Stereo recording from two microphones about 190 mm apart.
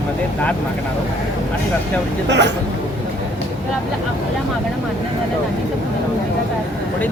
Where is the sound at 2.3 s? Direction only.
65° right (ahead or behind).